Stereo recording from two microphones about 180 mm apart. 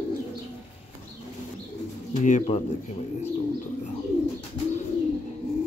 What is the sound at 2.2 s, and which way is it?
Speech, 45° left (ahead or behind).